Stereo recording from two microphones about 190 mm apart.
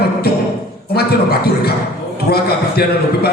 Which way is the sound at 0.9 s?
55° left (ahead or behind).